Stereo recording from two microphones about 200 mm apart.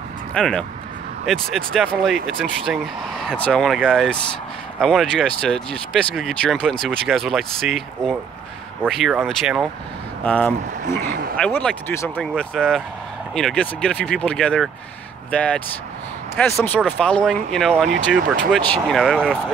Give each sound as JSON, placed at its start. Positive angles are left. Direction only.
{"t": 0.3, "sound": "speech", "side_deg": 5}
{"t": 11.1, "sound": "speech", "side_deg": -45}
{"t": 11.3, "sound": "speech", "side_deg": 5}